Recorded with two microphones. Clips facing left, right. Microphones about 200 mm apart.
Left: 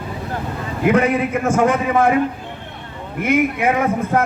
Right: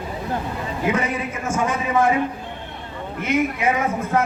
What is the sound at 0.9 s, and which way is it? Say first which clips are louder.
A man's voice: left 8 dB; 60° left (ahead or behind).